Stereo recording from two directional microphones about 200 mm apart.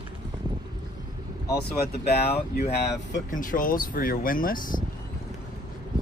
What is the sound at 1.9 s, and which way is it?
Speech, 50° left (ahead or behind).